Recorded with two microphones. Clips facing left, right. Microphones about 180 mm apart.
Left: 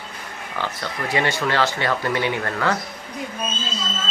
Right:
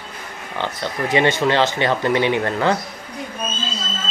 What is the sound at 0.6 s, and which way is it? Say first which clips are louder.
Speech: right 4 dB; 20° right (ahead or behind).